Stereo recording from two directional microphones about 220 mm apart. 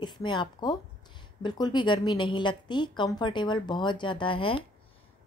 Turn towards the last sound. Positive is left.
turn(degrees=25)  # may be behind; listen again after turning